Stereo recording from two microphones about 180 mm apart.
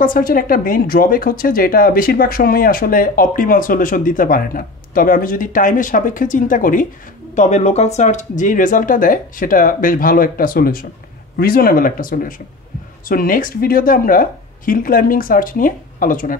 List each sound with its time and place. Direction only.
0.0 s speech: 50° left (ahead or behind)